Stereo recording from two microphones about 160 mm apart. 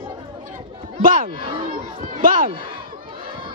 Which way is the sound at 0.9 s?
60° right (ahead or behind).